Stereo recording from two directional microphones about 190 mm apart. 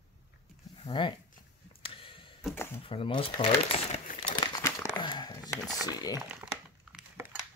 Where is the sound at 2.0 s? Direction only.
25° left (ahead or behind).